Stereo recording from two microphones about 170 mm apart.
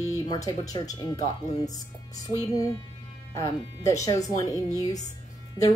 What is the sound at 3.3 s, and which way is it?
Speech, 20° left (ahead or behind).